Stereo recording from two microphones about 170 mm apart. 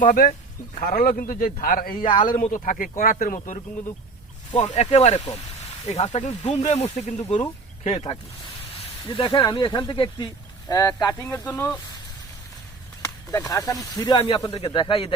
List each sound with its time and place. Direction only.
0.0 s a man's voice: 50° left (ahead or behind); by 11.8 s 10° left (ahead or behind)
13.0 s speech: 20° left (ahead or behind)